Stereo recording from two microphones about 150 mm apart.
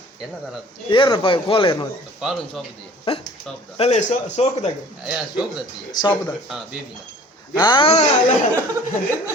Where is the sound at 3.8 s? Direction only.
45° left (ahead or behind).